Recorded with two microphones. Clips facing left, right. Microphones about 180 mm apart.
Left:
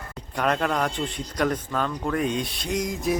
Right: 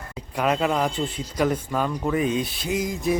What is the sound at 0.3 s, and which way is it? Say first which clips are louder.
Speech: right 2 dB; 5° right (ahead or behind).